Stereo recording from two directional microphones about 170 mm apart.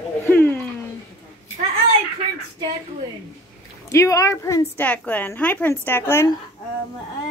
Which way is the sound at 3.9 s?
20° left (ahead or behind).